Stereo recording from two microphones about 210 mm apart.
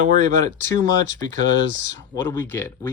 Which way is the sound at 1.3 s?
35° right (ahead or behind).